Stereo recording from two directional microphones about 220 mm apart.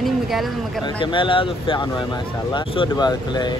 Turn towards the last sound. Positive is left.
turn(degrees=20)  # may be behind; listen again after turning